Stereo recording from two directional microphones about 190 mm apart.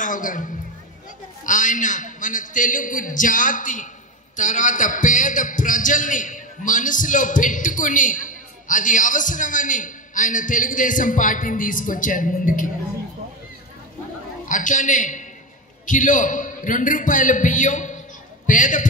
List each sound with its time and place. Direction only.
0.0 s a man's voice: 45° left (ahead or behind)
14.5 s a man's voice: 40° left (ahead or behind)